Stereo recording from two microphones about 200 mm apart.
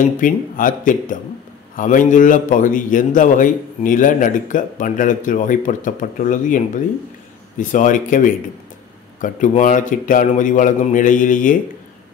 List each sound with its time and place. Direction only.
0.0 s a man's voice: 40° left (ahead or behind)